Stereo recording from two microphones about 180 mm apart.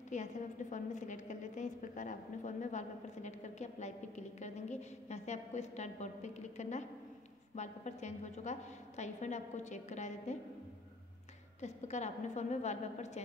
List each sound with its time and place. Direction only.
0.1 s a woman's voice: 45° left (ahead or behind)
11.6 s a woman's voice: 40° left (ahead or behind)